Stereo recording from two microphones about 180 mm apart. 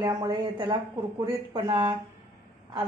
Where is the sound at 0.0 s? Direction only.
20° right (ahead or behind).